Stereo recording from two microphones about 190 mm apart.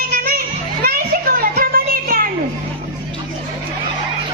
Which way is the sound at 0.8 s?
50° right (ahead or behind).